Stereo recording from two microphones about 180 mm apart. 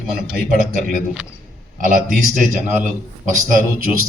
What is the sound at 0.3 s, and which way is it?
Speech, 50° right (ahead or behind).